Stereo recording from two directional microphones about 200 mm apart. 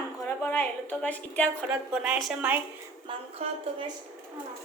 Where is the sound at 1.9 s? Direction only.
5° right (ahead or behind).